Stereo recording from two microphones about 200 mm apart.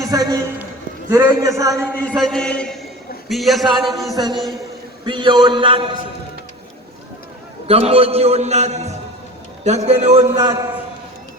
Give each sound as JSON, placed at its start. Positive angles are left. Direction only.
{"t": 0.0, "sound": "a man's voice", "side_deg": -20}
{"t": 1.7, "sound": "a man's voice", "side_deg": 0}
{"t": 4.1, "sound": "a man's voice", "side_deg": -20}
{"t": 7.7, "sound": "a man's voice", "side_deg": -30}
{"t": 10.3, "sound": "a man's voice", "side_deg": -20}